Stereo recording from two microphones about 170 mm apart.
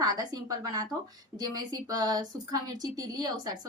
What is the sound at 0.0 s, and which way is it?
A woman's voice, 20° right (ahead or behind).